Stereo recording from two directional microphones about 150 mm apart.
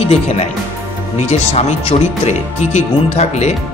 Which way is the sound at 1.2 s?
50° left (ahead or behind).